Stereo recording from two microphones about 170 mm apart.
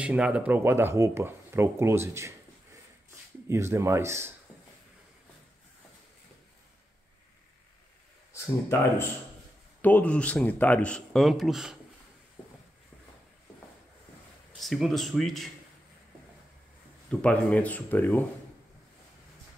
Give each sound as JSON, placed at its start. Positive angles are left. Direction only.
{"t": 0.0, "sound": "speech", "side_deg": -5}
{"t": 3.4, "sound": "speech", "side_deg": -15}
{"t": 8.3, "sound": "speech", "side_deg": 15}
{"t": 14.5, "sound": "speech", "side_deg": 0}
{"t": 17.1, "sound": "speech", "side_deg": 5}